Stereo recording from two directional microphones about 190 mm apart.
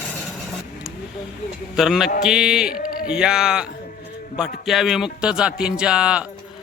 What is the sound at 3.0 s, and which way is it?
Speech, 5° right (ahead or behind).